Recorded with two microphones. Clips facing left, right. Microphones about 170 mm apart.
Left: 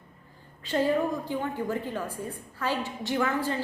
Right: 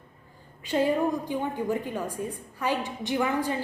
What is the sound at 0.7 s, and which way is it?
A woman's voice, 15° right (ahead or behind).